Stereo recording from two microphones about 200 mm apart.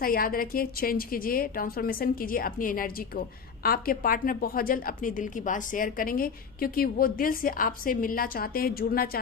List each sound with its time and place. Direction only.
0.0 s a woman's voice: 45° left (ahead or behind)